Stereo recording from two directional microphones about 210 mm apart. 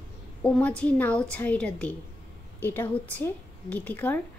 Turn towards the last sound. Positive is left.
turn(degrees=10)  # may be behind; listen again after turning